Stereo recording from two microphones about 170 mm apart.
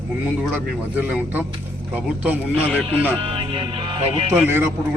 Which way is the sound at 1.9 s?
10° right (ahead or behind).